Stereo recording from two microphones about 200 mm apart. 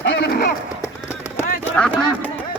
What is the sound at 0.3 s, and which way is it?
Run, 40° left (ahead or behind).